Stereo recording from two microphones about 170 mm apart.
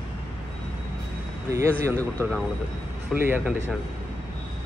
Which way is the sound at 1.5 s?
15° right (ahead or behind).